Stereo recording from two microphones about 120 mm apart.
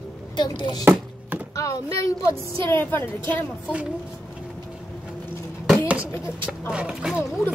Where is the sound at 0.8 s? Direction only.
15° right (ahead or behind).